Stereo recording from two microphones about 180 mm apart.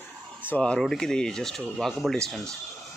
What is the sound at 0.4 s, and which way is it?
Speech, 10° left (ahead or behind).